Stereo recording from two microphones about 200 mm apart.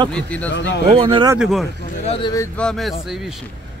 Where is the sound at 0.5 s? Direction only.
65° left (ahead or behind).